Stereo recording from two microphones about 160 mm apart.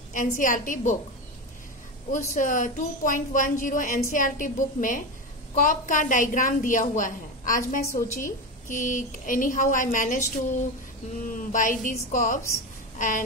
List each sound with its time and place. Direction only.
0.1 s a woman's voice: 55° left (ahead or behind)
2.1 s a woman's voice: 55° left (ahead or behind)